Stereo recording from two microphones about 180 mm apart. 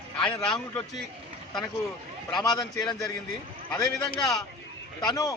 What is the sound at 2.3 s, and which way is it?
Speech, 25° left (ahead or behind).